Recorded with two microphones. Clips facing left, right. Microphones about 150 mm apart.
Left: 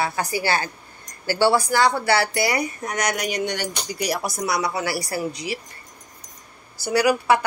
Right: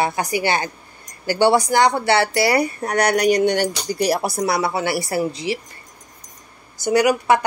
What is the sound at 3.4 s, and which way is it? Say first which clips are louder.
Speech: right 9 dB; 60° right (ahead or behind).